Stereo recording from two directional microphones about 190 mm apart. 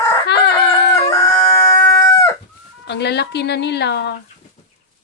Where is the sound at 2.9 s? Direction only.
60° left (ahead or behind).